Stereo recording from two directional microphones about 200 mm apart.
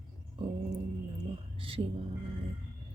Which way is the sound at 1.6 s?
25° right (ahead or behind).